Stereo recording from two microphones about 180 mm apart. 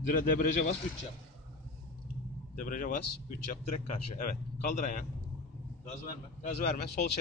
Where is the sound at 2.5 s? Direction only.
50° left (ahead or behind).